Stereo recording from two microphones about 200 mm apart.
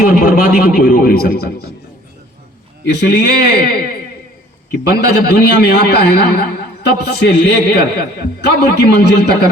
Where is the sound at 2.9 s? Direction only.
55° left (ahead or behind).